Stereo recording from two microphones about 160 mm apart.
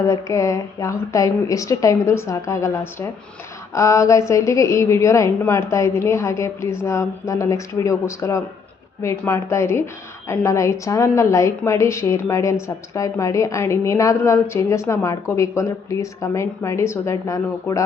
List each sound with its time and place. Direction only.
0.1 s a woman's voice: 20° left (ahead or behind)